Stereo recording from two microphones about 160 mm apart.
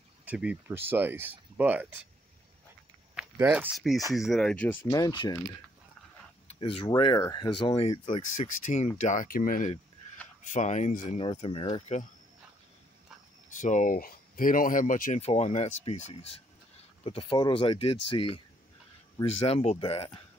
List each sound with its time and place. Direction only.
0.2 s speech: 10° right (ahead or behind)
3.2 s speech: 10° right (ahead or behind); by 4.7 s 5° left (ahead or behind)
4.8 s speech: 25° left (ahead or behind)
6.4 s a sound: 35° left (ahead or behind)
7.0 s speech: 30° left (ahead or behind); by 9.7 s 60° left (ahead or behind)
10.5 s speech: 50° left (ahead or behind)
11.1 s speech: 35° left (ahead or behind)
13.5 s speech: 50° left (ahead or behind)
15.1 s speech: 40° left (ahead or behind)
19.4 s speech: 45° left (ahead or behind)